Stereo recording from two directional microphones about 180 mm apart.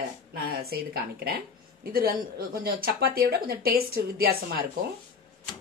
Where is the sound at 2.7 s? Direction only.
55° right (ahead or behind).